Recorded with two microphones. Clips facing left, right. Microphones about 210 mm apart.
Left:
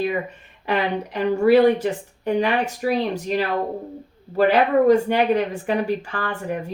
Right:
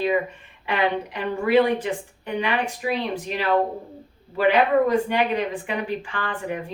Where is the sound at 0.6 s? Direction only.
40° left (ahead or behind).